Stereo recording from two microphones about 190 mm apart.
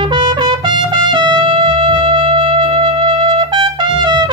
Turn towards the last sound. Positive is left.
turn(degrees=-25)  # may be behind; listen again after turning